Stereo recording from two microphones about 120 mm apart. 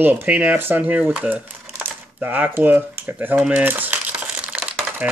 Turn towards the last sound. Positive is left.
turn(degrees=-10)  # may be behind; listen again after turning